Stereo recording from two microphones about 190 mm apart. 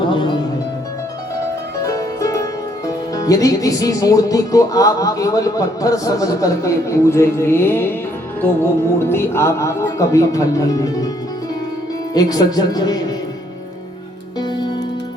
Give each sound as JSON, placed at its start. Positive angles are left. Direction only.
{"t": 0.0, "sound": "music", "side_deg": 25}
{"t": 1.8, "sound": "music", "side_deg": 15}
{"t": 8.4, "sound": "speech", "side_deg": 10}
{"t": 12.1, "sound": "speech", "side_deg": 20}
{"t": 14.3, "sound": "music", "side_deg": 20}